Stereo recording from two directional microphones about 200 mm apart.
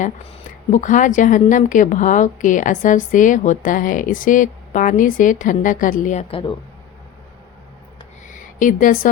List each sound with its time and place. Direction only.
0.7 s a woman's voice: 40° left (ahead or behind)
8.5 s a woman's voice: 40° left (ahead or behind)